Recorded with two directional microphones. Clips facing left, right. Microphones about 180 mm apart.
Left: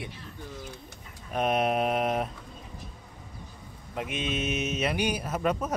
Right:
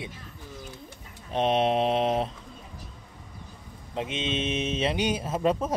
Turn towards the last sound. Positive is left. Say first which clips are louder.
# right 3 dB
turn(degrees=-25)  # may be behind; listen again after turning